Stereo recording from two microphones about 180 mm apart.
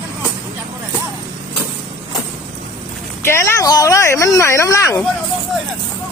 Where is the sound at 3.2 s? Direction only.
15° left (ahead or behind).